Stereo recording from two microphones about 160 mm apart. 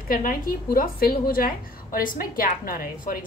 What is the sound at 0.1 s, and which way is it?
A woman's voice, 60° left (ahead or behind).